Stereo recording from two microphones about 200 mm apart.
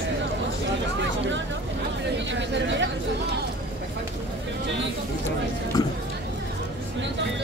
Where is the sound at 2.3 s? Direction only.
60° right (ahead or behind).